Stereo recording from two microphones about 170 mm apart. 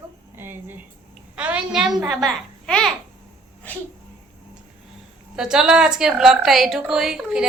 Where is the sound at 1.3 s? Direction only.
5° right (ahead or behind).